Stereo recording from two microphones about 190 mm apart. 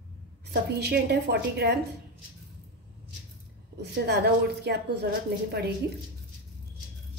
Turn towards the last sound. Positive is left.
turn(degrees=-60)  # may be behind; listen again after turning